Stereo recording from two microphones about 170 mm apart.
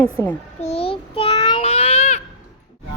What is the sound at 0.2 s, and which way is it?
Speech, 15° left (ahead or behind).